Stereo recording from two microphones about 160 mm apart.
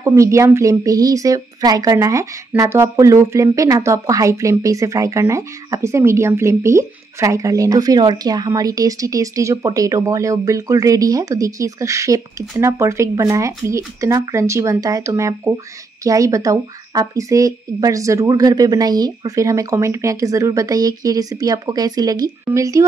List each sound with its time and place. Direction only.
0.0 s speech: 20° right (ahead or behind)